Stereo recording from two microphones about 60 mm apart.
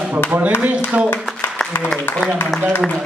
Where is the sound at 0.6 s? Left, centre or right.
Right.